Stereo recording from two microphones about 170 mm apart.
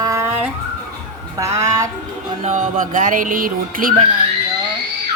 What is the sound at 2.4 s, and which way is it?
Music, 45° right (ahead or behind).